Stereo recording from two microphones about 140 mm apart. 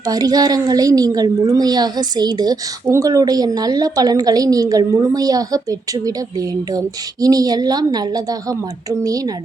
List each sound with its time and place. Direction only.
0.0 s a woman's voice: 25° right (ahead or behind)